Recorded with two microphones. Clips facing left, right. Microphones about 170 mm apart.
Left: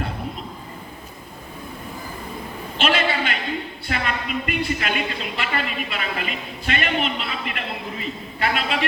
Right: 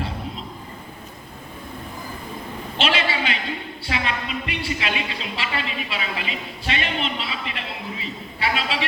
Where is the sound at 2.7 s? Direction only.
50° left (ahead or behind).